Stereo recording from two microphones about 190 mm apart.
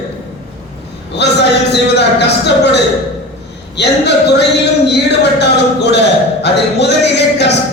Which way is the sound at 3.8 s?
65° left (ahead or behind).